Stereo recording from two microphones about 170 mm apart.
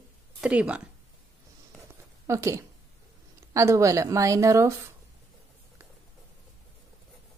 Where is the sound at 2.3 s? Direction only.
15° right (ahead or behind).